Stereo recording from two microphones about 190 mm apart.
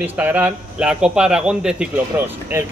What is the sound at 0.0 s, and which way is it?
Speech, 10° right (ahead or behind).